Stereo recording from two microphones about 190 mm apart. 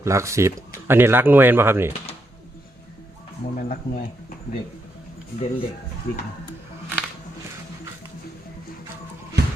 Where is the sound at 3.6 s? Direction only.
45° left (ahead or behind).